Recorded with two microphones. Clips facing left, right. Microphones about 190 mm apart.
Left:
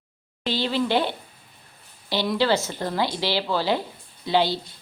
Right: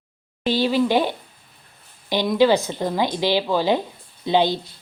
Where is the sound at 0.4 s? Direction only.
15° right (ahead or behind).